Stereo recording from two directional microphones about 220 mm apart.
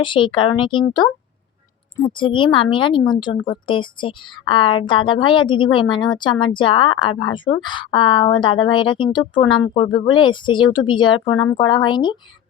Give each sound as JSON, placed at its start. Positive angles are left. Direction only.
{"t": 0.0, "sound": "a woman's voice", "side_deg": 20}